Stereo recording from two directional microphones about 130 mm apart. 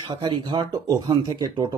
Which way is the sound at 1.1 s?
30° right (ahead or behind).